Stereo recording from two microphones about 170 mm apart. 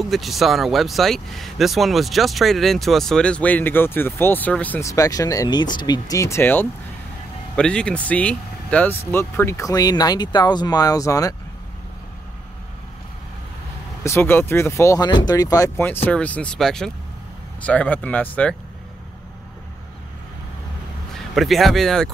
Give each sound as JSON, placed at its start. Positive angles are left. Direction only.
{"t": 0.0, "sound": "speech", "side_deg": 0}
{"t": 14.0, "sound": "speech", "side_deg": 15}
{"t": 21.4, "sound": "speech", "side_deg": 0}